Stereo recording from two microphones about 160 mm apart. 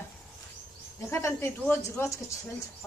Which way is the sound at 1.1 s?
15° left (ahead or behind).